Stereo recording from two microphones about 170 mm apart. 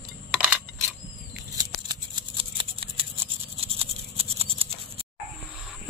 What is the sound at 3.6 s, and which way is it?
Toothbrush, 35° right (ahead or behind).